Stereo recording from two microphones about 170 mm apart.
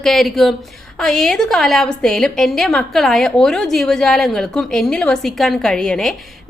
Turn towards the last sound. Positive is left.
turn(degrees=0)  # may be behind; listen again after turning